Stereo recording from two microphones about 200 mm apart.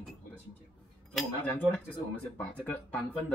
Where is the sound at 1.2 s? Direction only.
5° left (ahead or behind).